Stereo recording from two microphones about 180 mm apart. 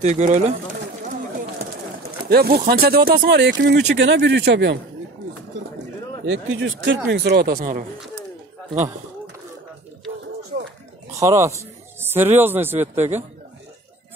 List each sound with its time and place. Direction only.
0.0 s speech: 40° right (ahead or behind)
2.2 s speech: 60° right (ahead or behind)
6.2 s a man's voice: 90° right
7.1 s speech: 70° right (ahead or behind); by 7.8 s 50° right (ahead or behind)
11.1 s speech: 15° right (ahead or behind)